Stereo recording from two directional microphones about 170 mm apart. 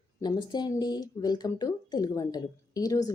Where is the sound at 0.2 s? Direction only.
25° left (ahead or behind).